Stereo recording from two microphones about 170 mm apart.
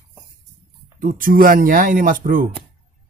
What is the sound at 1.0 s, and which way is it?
Speech, 50° right (ahead or behind).